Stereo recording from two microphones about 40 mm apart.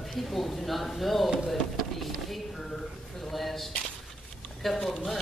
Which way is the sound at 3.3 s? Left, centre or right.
Centre.